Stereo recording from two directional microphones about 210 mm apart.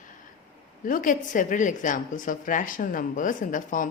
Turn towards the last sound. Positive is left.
turn(degrees=40)  # may be behind; listen again after turning